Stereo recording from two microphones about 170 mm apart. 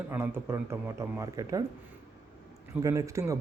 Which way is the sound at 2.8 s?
20° right (ahead or behind).